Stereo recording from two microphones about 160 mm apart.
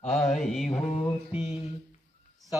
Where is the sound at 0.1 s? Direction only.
Centre (ahead or behind).